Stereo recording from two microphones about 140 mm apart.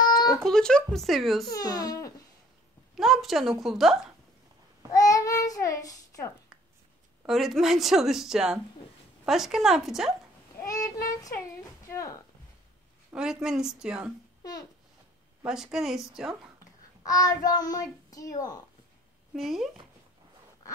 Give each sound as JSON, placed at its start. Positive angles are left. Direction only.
{"t": 0.0, "sound": "a sound", "side_deg": 30}
{"t": 0.4, "sound": "speech", "side_deg": 5}
{"t": 1.5, "sound": "a child's voice", "side_deg": 25}
{"t": 3.0, "sound": "speech", "side_deg": 0}
{"t": 4.9, "sound": "child singing", "side_deg": 25}
{"t": 7.2, "sound": "speech", "side_deg": 0}
{"t": 10.6, "sound": "a sound", "side_deg": 25}
{"t": 11.9, "sound": "a child's voice", "side_deg": 20}
{"t": 13.1, "sound": "speech", "side_deg": -5}
{"t": 15.4, "sound": "speech", "side_deg": -5}
{"t": 17.0, "sound": "a child's voice", "side_deg": 25}
{"t": 19.3, "sound": "speech", "side_deg": 0}